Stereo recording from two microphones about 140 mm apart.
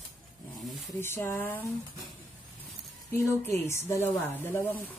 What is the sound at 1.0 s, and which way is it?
Speech, 15° left (ahead or behind).